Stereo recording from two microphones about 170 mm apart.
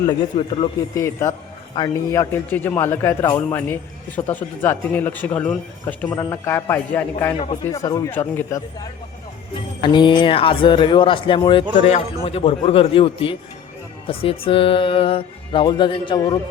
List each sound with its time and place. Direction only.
0.3 s speech: 30° left (ahead or behind)
0.9 s a man's voice: 15° left (ahead or behind)
9.8 s speech: 25° left (ahead or behind)